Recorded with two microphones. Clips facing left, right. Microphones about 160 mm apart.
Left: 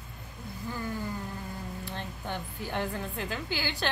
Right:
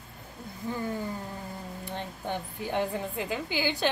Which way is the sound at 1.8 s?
15° right (ahead or behind).